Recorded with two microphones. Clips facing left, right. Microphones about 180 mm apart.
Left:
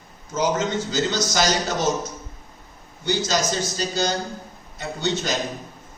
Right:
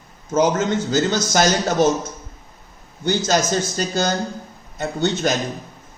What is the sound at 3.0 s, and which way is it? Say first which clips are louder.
A man's voice: right 4 dB; 50° right (ahead or behind).